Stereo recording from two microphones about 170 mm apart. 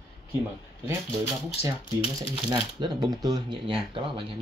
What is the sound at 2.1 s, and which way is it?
Speech, 25° right (ahead or behind).